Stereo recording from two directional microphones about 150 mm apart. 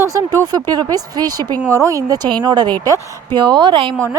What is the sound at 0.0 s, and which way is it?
Speech, 20° right (ahead or behind).